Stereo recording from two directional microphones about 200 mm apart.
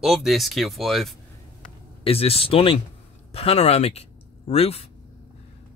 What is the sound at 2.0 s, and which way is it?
Speech, 30° left (ahead or behind).